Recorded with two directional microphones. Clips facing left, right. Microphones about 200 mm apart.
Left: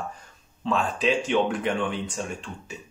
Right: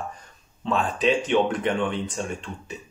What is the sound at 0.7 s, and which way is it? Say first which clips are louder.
Speech: right 2 dB; centre (ahead or behind).